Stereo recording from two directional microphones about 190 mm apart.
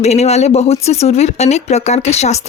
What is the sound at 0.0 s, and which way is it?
Speech, 35° left (ahead or behind).